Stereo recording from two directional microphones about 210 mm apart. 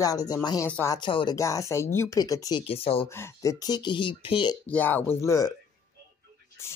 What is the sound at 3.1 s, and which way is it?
Speech, 15° left (ahead or behind).